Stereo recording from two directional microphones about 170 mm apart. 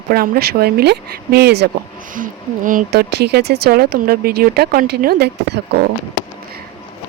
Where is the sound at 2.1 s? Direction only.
50° right (ahead or behind); by 5.6 s 70° right (ahead or behind).